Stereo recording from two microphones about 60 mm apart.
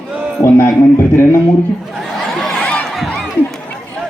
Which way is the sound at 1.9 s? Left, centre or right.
Centre.